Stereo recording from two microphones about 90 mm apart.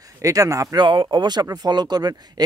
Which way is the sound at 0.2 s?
40° right (ahead or behind).